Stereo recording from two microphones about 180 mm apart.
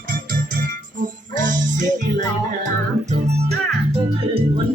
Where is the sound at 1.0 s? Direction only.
45° right (ahead or behind).